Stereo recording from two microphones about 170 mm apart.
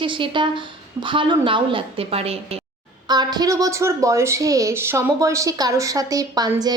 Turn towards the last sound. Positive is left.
turn(degrees=-25)  # may be behind; listen again after turning